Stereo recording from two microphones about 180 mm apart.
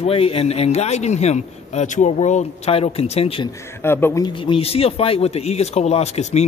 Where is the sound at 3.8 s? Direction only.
15° left (ahead or behind).